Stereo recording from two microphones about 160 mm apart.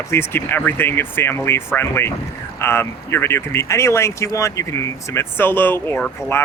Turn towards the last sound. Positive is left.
turn(degrees=15)  # may be behind; listen again after turning